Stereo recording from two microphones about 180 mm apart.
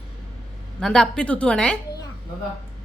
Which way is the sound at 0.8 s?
5° left (ahead or behind).